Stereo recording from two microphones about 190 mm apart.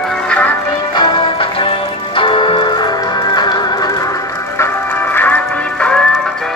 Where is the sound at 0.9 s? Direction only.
25° left (ahead or behind); by 6.3 s 5° left (ahead or behind).